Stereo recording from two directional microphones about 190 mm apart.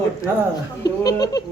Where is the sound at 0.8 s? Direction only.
20° left (ahead or behind).